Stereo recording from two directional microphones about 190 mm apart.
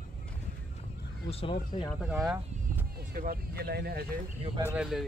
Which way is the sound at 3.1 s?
50° right (ahead or behind).